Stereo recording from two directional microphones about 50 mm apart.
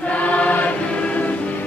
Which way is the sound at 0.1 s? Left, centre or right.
Left.